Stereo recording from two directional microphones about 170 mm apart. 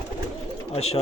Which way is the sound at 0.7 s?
35° left (ahead or behind).